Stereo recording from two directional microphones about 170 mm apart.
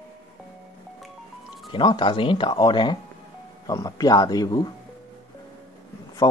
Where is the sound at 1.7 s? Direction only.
30° left (ahead or behind).